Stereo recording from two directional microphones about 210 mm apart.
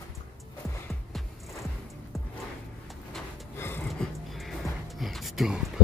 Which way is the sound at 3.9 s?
Centre (ahead or behind).